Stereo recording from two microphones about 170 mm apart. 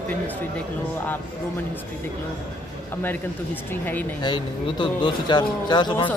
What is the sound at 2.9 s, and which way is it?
Speech, 10° left (ahead or behind).